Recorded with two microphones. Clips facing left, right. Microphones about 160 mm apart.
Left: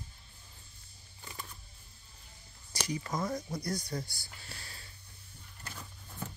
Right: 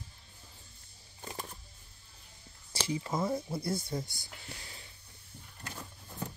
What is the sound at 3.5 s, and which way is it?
Speech, 25° right (ahead or behind).